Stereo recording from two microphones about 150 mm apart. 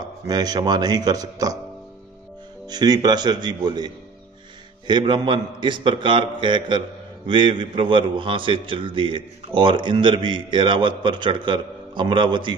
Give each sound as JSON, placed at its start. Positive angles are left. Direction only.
{"t": 0.0, "sound": "a man's voice", "side_deg": -25}
{"t": 2.6, "sound": "a man's voice", "side_deg": -25}